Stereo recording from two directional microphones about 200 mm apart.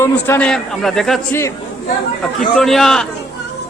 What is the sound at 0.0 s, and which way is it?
Speech, 10° left (ahead or behind).